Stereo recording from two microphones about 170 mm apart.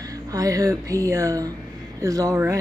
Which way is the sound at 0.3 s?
20° right (ahead or behind).